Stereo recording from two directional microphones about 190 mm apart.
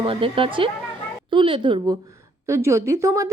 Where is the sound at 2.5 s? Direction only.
15° right (ahead or behind).